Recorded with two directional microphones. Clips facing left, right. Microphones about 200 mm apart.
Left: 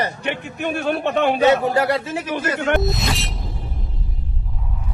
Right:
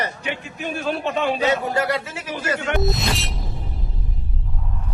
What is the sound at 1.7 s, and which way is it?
Speech, 30° left (ahead or behind).